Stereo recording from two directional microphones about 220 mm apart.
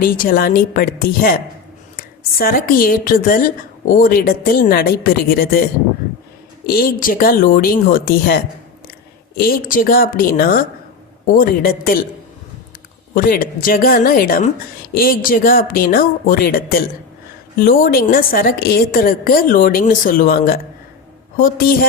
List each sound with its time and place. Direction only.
0.0 s a woman's voice: 40° left (ahead or behind)
6.7 s a woman's voice: 40° left (ahead or behind)
9.5 s a woman's voice: 40° left (ahead or behind)
13.1 s a woman's voice: 40° left (ahead or behind)